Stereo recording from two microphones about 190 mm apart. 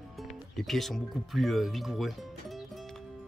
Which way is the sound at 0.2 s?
Centre (ahead or behind).